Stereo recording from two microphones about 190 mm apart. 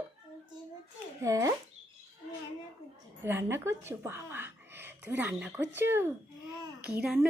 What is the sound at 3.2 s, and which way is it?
A woman's voice, 10° right (ahead or behind).